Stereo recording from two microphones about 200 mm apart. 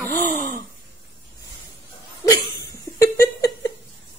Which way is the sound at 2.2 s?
20° left (ahead or behind).